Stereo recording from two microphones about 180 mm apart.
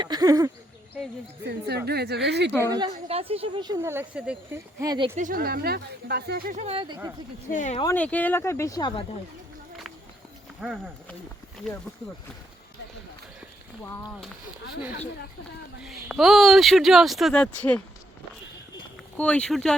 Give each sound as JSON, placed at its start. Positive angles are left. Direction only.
{"t": 0.0, "sound": "a woman's voice", "side_deg": -20}
{"t": 1.5, "sound": "speech", "side_deg": -65}
{"t": 2.6, "sound": "a woman's voice", "side_deg": -25}
{"t": 4.8, "sound": "a woman's voice", "side_deg": -25}
{"t": 5.1, "sound": "speech", "side_deg": -50}
{"t": 6.7, "sound": "a woman's voice", "side_deg": -25}
{"t": 7.5, "sound": "speech", "side_deg": 45}
{"t": 7.9, "sound": "speech", "side_deg": 10}
{"t": 10.6, "sound": "speech", "side_deg": -10}
{"t": 11.6, "sound": "speech", "side_deg": 0}
{"t": 15.8, "sound": "speech", "side_deg": 0}
{"t": 19.1, "sound": "speech", "side_deg": 5}